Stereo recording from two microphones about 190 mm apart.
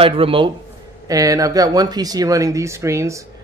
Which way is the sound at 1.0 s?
20° right (ahead or behind).